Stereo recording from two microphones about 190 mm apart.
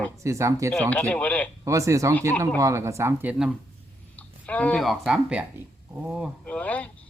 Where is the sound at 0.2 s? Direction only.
15° right (ahead or behind).